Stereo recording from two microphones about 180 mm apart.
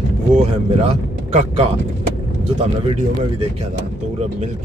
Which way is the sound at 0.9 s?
35° right (ahead or behind).